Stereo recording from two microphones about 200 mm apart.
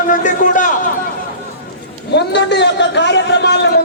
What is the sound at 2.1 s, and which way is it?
A man's voice, 60° left (ahead or behind).